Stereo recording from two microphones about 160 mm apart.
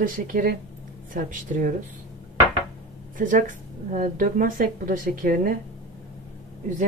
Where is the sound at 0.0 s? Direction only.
60° right (ahead or behind).